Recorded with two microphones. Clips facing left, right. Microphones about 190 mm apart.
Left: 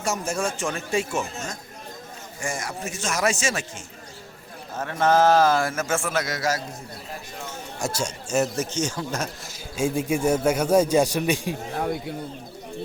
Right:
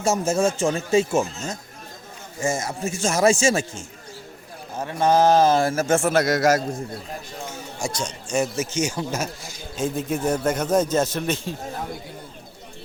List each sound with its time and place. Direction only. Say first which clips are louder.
0.0 s speech: right 6 dB; 25° right (ahead or behind)
4.7 s speech: right 1 dB; 15° right (ahead or behind); by 6.6 s 45° right (ahead or behind)
7.8 s a man's voice: left 1 dB; 5° left (ahead or behind)